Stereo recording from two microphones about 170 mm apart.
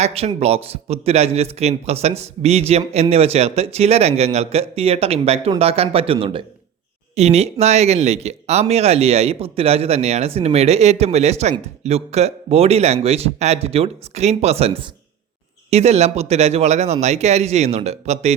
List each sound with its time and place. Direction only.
0.0 s a man's voice: 35° right (ahead or behind)